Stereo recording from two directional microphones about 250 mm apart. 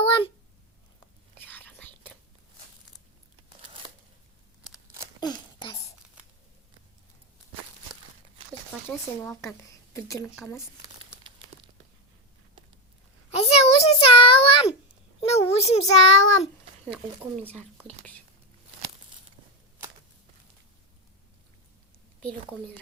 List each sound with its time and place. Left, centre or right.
1.5 s whispering: centre
5.2 s a sound: centre
9.2 s speech: centre
13.3 s a sound: left
15.5 s child singing: left
17.5 s speech: centre